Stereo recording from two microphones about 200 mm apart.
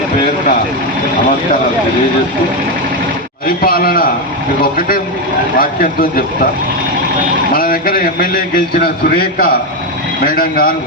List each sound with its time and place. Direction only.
3.4 s a man's voice: 45° left (ahead or behind)
5.5 s a man's voice: 45° left (ahead or behind)
7.5 s a man's voice: 45° left (ahead or behind)